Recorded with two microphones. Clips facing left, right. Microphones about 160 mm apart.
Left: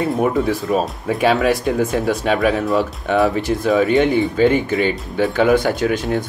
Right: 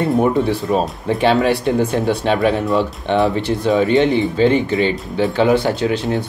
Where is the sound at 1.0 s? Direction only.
30° right (ahead or behind).